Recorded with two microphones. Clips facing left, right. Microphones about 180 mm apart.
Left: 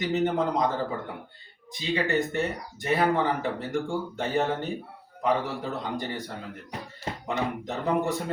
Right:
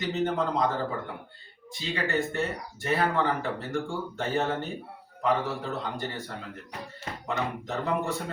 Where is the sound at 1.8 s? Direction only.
15° left (ahead or behind).